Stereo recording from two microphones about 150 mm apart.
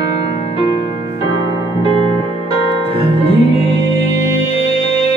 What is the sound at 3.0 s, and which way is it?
Music, 40° left (ahead or behind).